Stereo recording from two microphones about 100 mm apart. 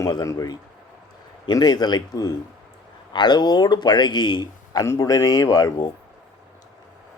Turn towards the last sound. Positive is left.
turn(degrees=40)  # may be behind; listen again after turning